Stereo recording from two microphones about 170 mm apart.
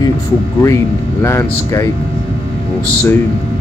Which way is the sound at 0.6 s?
15° left (ahead or behind).